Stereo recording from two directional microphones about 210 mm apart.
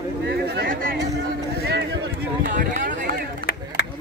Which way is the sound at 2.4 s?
40° right (ahead or behind).